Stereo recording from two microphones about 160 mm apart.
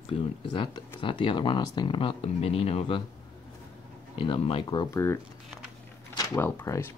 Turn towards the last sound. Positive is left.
turn(degrees=15)  # may be behind; listen again after turning